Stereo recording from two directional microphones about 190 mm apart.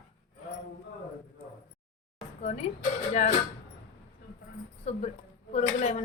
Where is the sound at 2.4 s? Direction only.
35° left (ahead or behind).